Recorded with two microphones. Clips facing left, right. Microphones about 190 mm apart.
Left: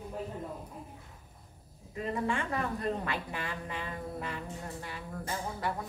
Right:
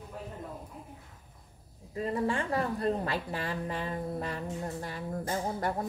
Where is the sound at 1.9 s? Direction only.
35° right (ahead or behind).